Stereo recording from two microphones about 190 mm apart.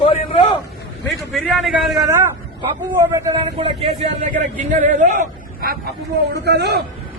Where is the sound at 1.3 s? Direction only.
Centre (ahead or behind).